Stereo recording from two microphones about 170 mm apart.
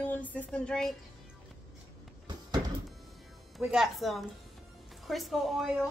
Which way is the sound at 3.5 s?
5° right (ahead or behind).